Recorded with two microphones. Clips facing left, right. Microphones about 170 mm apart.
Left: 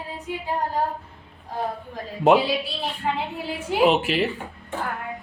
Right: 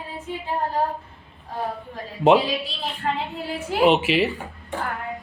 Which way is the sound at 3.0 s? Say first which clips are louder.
Even; 15° left (ahead or behind).